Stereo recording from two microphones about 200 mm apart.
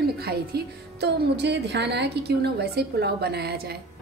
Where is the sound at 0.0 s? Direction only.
50° right (ahead or behind).